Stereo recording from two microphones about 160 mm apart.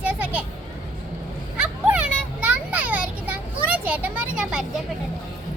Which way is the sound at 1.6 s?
10° right (ahead or behind).